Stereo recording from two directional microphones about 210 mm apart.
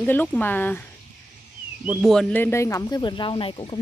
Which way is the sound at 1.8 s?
Centre (ahead or behind).